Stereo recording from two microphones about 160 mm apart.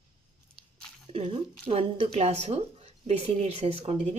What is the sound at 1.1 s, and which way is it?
Speech, 35° right (ahead or behind).